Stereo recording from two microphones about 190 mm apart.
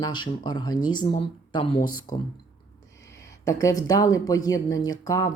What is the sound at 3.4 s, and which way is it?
Speech, 15° left (ahead or behind).